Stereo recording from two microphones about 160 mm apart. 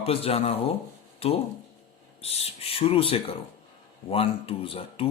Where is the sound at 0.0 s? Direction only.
35° left (ahead or behind).